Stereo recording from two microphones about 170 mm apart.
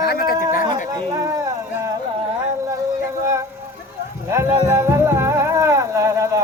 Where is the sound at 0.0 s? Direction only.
65° left (ahead or behind).